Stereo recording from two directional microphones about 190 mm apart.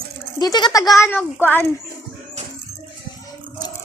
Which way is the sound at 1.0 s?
10° left (ahead or behind).